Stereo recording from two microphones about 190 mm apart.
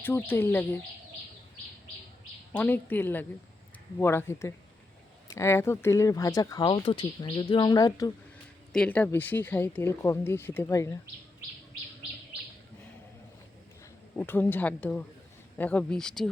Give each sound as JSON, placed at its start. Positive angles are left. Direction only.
{"t": 0.0, "sound": "speech", "side_deg": 10}
{"t": 2.5, "sound": "speech", "side_deg": 10}
{"t": 8.7, "sound": "speech", "side_deg": 5}
{"t": 14.2, "sound": "speech", "side_deg": 10}